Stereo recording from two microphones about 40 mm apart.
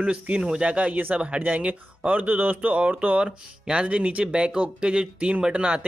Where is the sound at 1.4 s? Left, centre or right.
Right.